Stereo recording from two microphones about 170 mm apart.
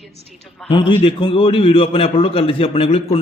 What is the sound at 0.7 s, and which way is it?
A man's voice, 30° left (ahead or behind).